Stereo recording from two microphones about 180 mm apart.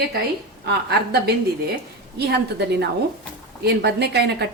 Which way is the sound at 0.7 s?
65° right (ahead or behind).